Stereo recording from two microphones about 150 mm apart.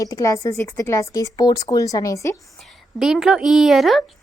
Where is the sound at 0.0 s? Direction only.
20° left (ahead or behind).